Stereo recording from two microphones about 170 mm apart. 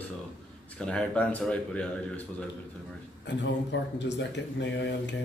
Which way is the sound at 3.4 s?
90° left.